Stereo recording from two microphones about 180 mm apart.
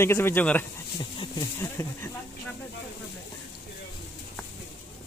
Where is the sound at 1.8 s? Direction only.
20° left (ahead or behind).